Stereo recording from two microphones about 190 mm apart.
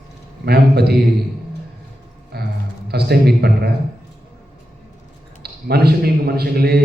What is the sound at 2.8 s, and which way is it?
Speech, 55° right (ahead or behind).